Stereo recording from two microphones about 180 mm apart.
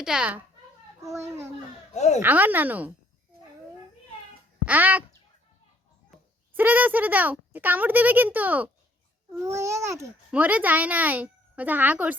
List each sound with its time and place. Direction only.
0.0 s a child's voice: 5° right (ahead or behind)
1.9 s speech: 40° left (ahead or behind)
2.2 s a child's voice: 10° right (ahead or behind)
4.6 s a child's voice: 10° right (ahead or behind)
6.1 s a sound: centre (ahead or behind)
6.6 s a child's voice: 10° right (ahead or behind)